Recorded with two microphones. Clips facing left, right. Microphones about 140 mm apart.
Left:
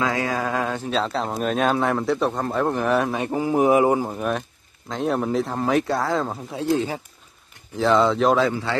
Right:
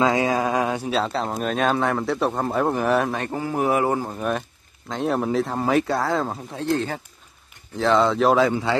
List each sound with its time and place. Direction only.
0.0 s a man's voice: 20° right (ahead or behind); by 3.2 s centre (ahead or behind)
3.2 s speech: 10° left (ahead or behind)
4.2 s a man's voice: centre (ahead or behind)